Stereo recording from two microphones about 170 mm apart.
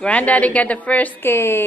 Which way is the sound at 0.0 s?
10° left (ahead or behind).